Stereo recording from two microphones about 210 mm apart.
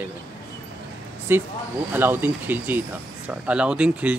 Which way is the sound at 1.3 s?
10° right (ahead or behind).